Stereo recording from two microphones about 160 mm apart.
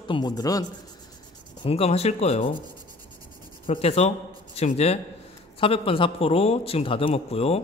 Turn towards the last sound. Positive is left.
turn(degrees=40)  # may be behind; listen again after turning